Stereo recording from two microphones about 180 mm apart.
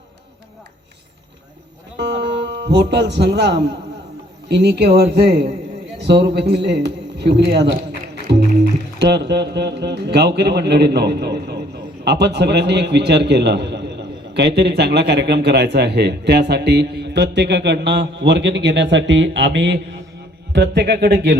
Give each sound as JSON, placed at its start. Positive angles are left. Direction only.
{"t": 2.5, "sound": "a man's voice", "side_deg": -70}
{"t": 8.1, "sound": "music", "side_deg": -70}
{"t": 9.0, "sound": "a man's voice", "side_deg": -70}